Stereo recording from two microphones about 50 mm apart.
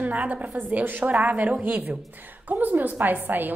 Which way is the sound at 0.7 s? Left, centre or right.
Right.